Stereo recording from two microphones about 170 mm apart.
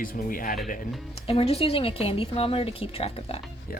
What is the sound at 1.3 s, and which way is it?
Speech, 35° left (ahead or behind).